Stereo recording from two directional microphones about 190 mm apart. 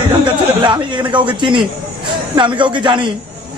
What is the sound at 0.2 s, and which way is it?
A man's voice, 25° right (ahead or behind).